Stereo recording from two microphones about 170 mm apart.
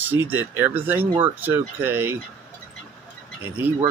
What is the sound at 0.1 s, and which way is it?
Speech, 10° right (ahead or behind).